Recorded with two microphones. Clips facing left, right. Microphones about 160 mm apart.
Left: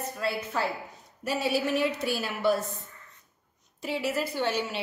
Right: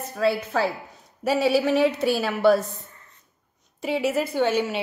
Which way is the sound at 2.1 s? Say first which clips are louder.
Right 8 dB; 75° right (ahead or behind).